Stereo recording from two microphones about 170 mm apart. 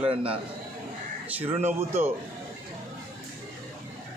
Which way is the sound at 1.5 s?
40° right (ahead or behind).